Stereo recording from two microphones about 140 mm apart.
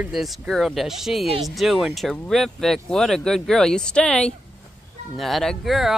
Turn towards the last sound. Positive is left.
turn(degrees=0)  # may be behind; listen again after turning